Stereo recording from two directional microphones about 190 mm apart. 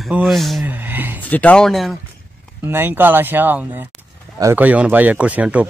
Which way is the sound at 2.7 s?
10° right (ahead or behind).